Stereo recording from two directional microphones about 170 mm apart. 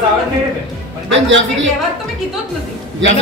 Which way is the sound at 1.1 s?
90° right.